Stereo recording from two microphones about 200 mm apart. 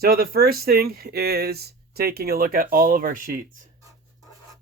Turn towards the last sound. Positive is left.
turn(degrees=-45)  # may be behind; listen again after turning